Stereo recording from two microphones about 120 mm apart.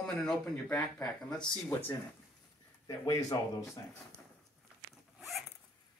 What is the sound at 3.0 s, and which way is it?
Speech, 30° left (ahead or behind).